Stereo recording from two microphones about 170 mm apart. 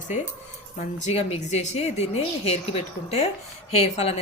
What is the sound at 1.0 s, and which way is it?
A woman's voice, 40° left (ahead or behind).